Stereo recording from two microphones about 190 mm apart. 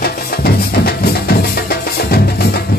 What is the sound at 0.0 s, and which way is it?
Music, 55° left (ahead or behind).